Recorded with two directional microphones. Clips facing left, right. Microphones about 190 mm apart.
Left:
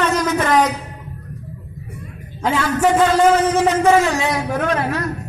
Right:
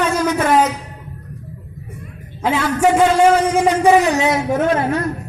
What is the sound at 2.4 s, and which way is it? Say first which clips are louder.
A man's voice: right 1 dB; 5° right (ahead or behind).